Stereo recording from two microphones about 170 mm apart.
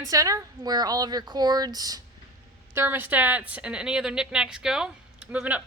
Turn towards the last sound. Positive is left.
turn(degrees=-10)  # may be behind; listen again after turning